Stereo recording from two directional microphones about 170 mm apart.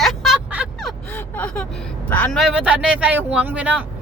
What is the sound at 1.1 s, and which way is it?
Gasp, 10° left (ahead or behind).